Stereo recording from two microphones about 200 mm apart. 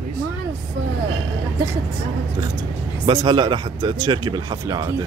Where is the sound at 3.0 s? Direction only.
20° right (ahead or behind).